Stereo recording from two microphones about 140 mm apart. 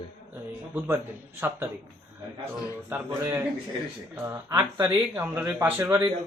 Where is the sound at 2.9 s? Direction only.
15° right (ahead or behind).